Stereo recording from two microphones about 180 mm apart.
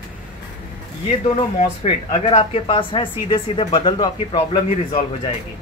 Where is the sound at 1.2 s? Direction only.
35° left (ahead or behind).